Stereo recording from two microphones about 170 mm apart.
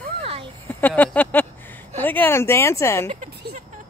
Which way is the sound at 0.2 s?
35° right (ahead or behind).